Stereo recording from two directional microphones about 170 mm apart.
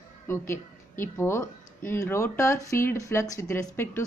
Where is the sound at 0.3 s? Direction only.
15° left (ahead or behind).